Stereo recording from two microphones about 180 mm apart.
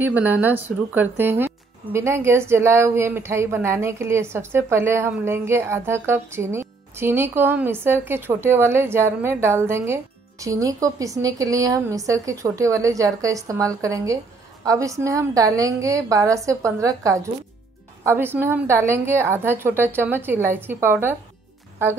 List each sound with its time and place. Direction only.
0.0 s a woman's voice: 10° right (ahead or behind)